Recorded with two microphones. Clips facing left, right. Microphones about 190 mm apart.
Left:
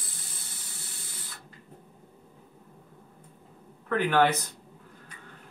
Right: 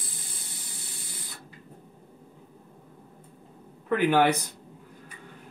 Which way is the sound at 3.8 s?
15° right (ahead or behind).